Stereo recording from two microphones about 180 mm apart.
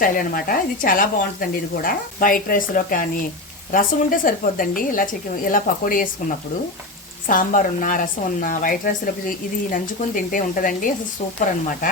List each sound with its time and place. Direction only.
0.0 s speech: 50° left (ahead or behind)
7.3 s speech: 45° left (ahead or behind)
10.3 s speech: 50° left (ahead or behind)